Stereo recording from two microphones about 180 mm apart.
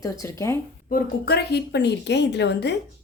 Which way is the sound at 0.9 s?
55° left (ahead or behind).